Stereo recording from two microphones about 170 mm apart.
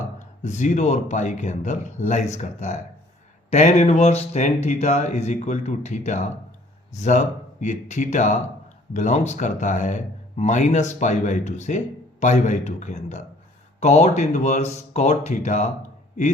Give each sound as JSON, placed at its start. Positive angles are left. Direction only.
{"t": 0.2, "sound": "speech", "side_deg": 45}